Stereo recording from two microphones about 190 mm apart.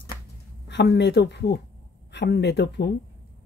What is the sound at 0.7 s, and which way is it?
Speech, 65° left (ahead or behind).